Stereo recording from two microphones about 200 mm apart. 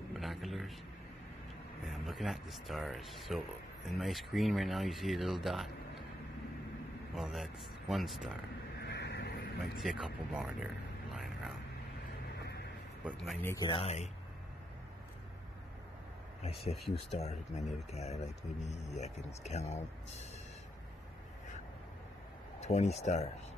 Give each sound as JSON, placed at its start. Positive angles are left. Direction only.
{"t": 0.1, "sound": "a sound", "side_deg": 0}
{"t": 1.9, "sound": "speech", "side_deg": 0}
{"t": 7.2, "sound": "speech", "side_deg": 0}
{"t": 8.8, "sound": "vehicle", "side_deg": 60}
{"t": 9.8, "sound": "speech", "side_deg": 0}
{"t": 12.3, "sound": "vehicle", "side_deg": 55}
{"t": 13.1, "sound": "speech", "side_deg": 5}
{"t": 13.5, "sound": "speech", "side_deg": 25}
{"t": 16.9, "sound": "speech", "side_deg": 35}
{"t": 22.6, "sound": "speech", "side_deg": 35}